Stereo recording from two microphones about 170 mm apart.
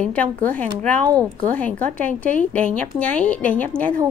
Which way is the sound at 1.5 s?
10° left (ahead or behind).